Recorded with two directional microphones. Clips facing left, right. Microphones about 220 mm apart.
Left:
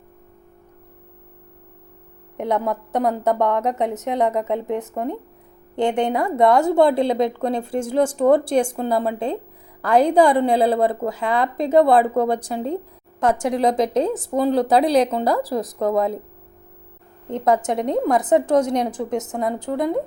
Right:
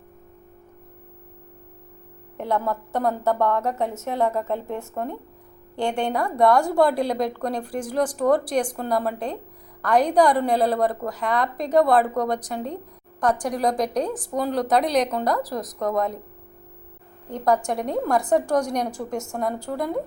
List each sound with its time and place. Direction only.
2.4 s a woman's voice: 20° left (ahead or behind)
17.2 s a woman's voice: 20° left (ahead or behind)